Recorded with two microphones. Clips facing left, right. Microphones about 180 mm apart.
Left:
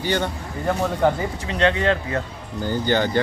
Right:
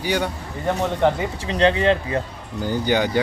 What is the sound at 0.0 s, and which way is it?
Speech, 10° right (ahead or behind).